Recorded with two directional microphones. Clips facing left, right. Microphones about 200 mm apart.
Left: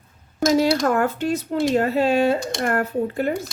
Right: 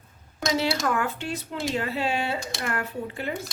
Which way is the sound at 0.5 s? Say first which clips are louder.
Left 7 dB; 45° left (ahead or behind).